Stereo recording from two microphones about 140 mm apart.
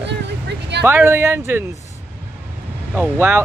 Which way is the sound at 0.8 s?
15° right (ahead or behind).